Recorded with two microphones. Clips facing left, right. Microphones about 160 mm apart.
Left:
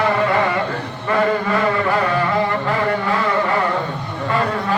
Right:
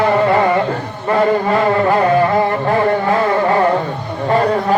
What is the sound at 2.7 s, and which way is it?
Music, 40° right (ahead or behind).